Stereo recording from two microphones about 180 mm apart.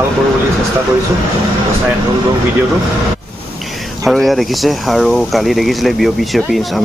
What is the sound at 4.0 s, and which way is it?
Speech, centre (ahead or behind).